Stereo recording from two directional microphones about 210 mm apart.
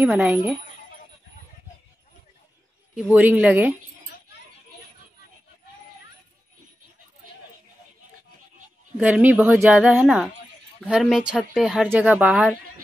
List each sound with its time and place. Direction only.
0.0 s speech: 5° right (ahead or behind)
3.0 s a woman's voice: 5° right (ahead or behind)
8.9 s a woman's voice: 5° right (ahead or behind)